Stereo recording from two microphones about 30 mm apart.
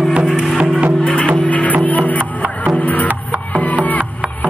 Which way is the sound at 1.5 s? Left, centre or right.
Left.